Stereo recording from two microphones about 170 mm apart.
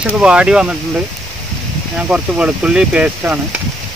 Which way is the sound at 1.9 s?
5° right (ahead or behind).